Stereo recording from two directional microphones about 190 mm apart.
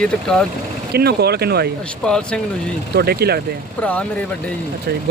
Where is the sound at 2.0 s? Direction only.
5° left (ahead or behind).